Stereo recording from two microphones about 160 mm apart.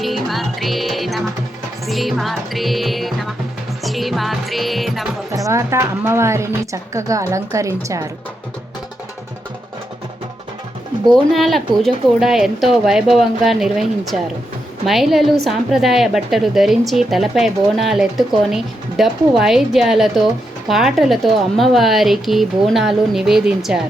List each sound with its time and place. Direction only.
0.0 s music: centre (ahead or behind)
5.3 s a woman's voice: 20° right (ahead or behind)
11.3 s speech: centre (ahead or behind)